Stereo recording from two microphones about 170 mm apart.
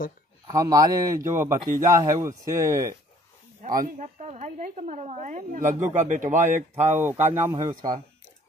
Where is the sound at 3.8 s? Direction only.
45° right (ahead or behind).